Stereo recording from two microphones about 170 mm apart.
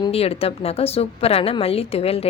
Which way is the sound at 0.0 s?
35° left (ahead or behind).